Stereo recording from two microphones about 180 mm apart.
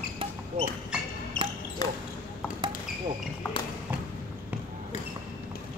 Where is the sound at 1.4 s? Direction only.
50° left (ahead or behind).